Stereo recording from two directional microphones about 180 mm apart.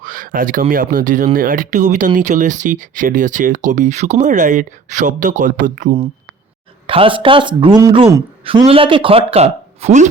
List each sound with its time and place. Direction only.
0.0 s a sound: 50° right (ahead or behind)
0.7 s speech: 50° right (ahead or behind)
6.8 s a man's voice: 30° right (ahead or behind)